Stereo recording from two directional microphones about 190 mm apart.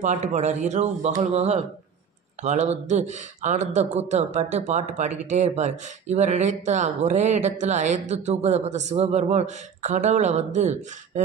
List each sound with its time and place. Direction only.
0.0 s speech: 40° right (ahead or behind)